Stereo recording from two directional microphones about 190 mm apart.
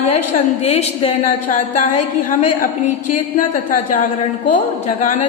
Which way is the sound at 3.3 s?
45° left (ahead or behind).